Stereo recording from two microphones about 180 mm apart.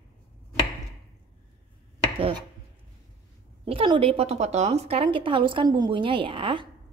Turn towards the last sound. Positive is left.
turn(degrees=-30)  # may be behind; listen again after turning